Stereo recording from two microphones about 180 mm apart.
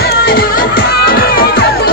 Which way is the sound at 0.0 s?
55° left (ahead or behind).